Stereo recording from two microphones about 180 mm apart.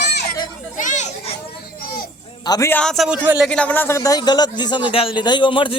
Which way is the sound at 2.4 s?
20° left (ahead or behind).